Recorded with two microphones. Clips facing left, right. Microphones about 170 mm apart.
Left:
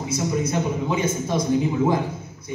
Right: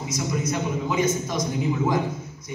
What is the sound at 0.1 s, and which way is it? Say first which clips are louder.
A man's voice: left 3 dB; 30° left (ahead or behind).